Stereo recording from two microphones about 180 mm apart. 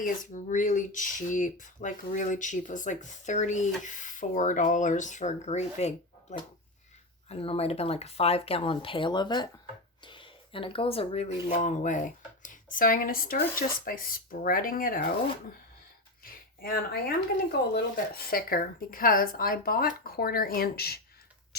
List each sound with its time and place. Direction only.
0.0 s speech: 45° left (ahead or behind)
7.3 s speech: 30° left (ahead or behind)
11.4 s speech: 45° left (ahead or behind)
16.2 s a sound: 55° left (ahead or behind)
17.7 s speech: 55° left (ahead or behind)